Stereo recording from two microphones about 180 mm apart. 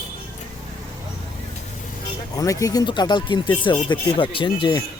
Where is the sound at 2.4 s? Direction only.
20° left (ahead or behind).